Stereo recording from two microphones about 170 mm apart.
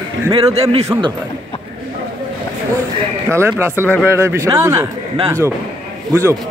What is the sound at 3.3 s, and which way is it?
A man's voice, 15° right (ahead or behind).